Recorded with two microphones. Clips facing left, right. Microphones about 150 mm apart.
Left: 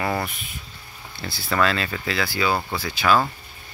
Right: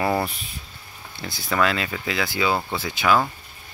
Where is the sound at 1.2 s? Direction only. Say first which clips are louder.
Even; 15° right (ahead or behind).